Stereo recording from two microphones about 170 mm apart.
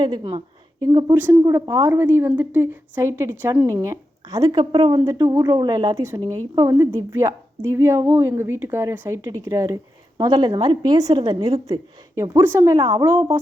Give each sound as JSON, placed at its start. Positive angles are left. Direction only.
{"t": 0.0, "sound": "a woman's voice", "side_deg": -30}
{"t": 0.9, "sound": "a woman's voice", "side_deg": -20}